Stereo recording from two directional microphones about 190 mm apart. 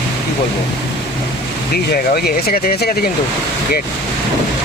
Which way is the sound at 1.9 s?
55° left (ahead or behind).